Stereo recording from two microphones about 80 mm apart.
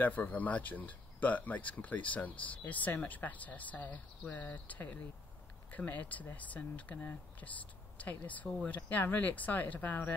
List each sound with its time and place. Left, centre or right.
0.0 s speech: centre